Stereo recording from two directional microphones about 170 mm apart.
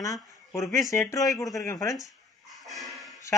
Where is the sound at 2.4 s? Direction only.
Centre (ahead or behind).